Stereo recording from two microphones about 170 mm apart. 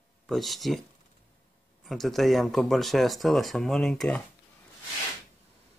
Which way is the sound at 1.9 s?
Centre (ahead or behind).